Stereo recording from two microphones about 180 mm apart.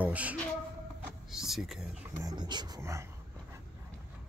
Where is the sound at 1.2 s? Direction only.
Centre (ahead or behind).